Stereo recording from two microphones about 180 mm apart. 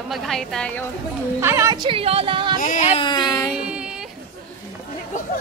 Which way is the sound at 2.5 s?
45° left (ahead or behind).